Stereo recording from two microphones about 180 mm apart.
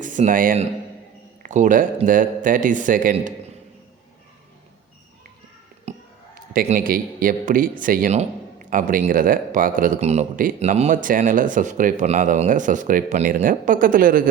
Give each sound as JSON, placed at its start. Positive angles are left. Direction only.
{"t": 0.0, "sound": "speech", "side_deg": -45}
{"t": 5.9, "sound": "a sound", "side_deg": -40}
{"t": 6.7, "sound": "speech", "side_deg": -50}